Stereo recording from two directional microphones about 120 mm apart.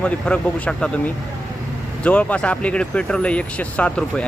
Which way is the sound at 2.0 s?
10° left (ahead or behind).